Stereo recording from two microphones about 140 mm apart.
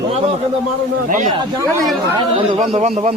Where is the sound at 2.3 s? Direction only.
45° right (ahead or behind).